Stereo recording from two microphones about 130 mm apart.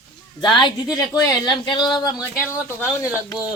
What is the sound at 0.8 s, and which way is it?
Speech, 30° left (ahead or behind).